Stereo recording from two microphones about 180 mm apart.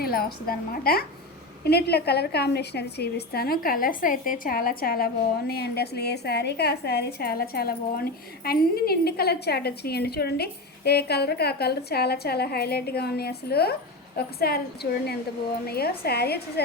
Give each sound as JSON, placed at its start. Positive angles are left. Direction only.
{"t": 0.0, "sound": "a woman's voice", "side_deg": 55}